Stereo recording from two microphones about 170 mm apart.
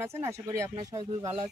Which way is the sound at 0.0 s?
15° right (ahead or behind).